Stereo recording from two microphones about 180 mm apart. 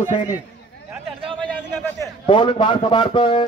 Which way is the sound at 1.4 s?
10° left (ahead or behind).